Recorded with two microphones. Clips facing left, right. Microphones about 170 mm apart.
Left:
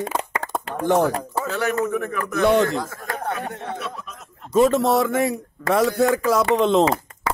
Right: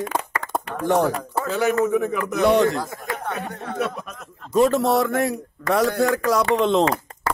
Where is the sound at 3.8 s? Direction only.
55° right (ahead or behind).